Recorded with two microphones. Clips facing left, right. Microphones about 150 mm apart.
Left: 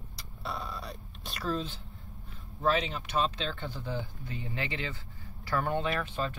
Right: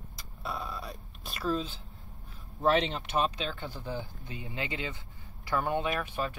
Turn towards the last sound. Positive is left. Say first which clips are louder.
# even
turn(degrees=-15)  # may be behind; listen again after turning